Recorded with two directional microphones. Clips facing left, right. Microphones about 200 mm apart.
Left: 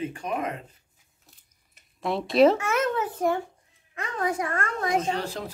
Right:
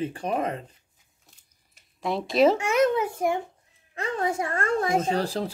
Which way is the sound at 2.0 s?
Centre (ahead or behind).